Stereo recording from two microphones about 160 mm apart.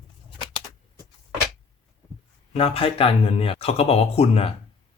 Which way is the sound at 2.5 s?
35° left (ahead or behind).